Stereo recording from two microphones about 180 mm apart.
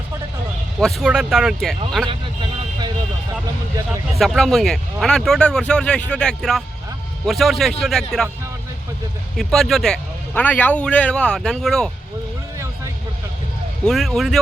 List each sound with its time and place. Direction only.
0.8 s speech: centre (ahead or behind)
2.0 s vehicle: 25° right (ahead or behind)
4.1 s speech: centre (ahead or behind)
9.4 s speech: centre (ahead or behind)
13.8 s speech: centre (ahead or behind)